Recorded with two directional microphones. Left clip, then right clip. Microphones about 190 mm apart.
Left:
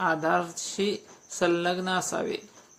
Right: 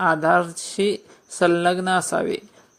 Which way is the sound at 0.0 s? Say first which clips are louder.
Right 7 dB; 30° right (ahead or behind).